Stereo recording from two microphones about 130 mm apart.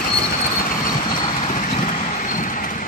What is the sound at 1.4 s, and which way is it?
Vehicle, 75° left (ahead or behind).